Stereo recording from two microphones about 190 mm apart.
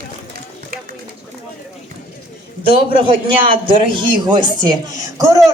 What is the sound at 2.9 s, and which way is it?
Speech, 25° right (ahead or behind).